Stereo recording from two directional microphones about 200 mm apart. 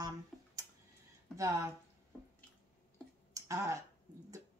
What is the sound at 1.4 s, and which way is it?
Speech, 15° right (ahead or behind).